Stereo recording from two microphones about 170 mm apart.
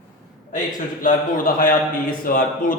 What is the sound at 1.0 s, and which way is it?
A man's voice, 55° left (ahead or behind).